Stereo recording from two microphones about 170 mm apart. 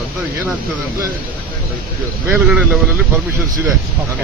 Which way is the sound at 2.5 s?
Centre (ahead or behind).